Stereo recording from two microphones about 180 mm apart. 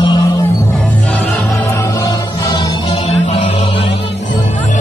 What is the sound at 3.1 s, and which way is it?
Chant, 40° left (ahead or behind).